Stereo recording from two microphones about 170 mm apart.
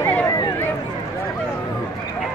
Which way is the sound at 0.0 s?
15° left (ahead or behind).